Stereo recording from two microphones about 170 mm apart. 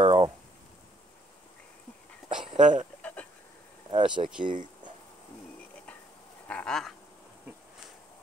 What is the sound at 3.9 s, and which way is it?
Speech, 30° right (ahead or behind).